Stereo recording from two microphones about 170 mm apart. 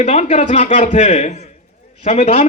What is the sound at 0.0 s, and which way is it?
A man's voice, 40° left (ahead or behind).